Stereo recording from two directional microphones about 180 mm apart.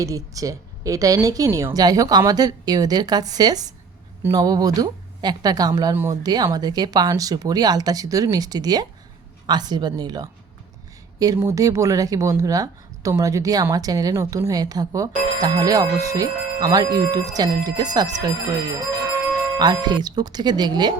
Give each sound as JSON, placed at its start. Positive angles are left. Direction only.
{"t": 0.0, "sound": "speech", "side_deg": -20}
{"t": 19.5, "sound": "speech", "side_deg": -20}